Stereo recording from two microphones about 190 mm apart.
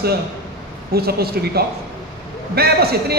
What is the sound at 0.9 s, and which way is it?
Speech, 55° right (ahead or behind).